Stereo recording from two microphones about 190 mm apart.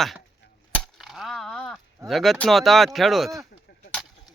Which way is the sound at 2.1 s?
Centre (ahead or behind).